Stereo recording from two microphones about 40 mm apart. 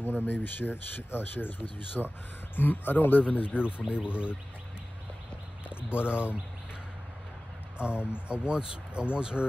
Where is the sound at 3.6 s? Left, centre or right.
Right.